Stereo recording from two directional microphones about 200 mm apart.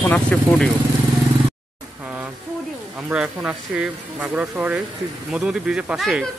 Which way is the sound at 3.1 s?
5° right (ahead or behind).